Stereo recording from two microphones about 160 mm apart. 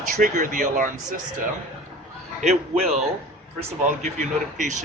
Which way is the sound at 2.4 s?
45° right (ahead or behind).